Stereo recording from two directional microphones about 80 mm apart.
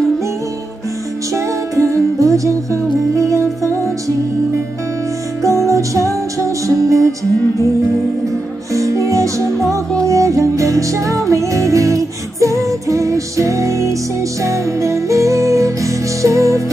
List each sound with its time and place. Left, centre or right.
1.3 s music: right
5.7 s music: right
8.7 s music: right